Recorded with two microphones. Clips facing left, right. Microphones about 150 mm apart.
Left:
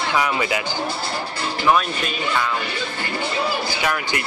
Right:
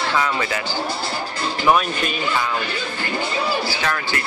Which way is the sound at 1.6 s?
5° right (ahead or behind).